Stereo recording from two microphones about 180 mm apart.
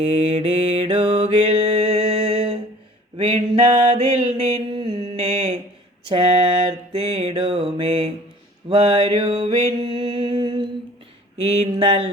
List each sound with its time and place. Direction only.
0.0 s mantra: 30° right (ahead or behind)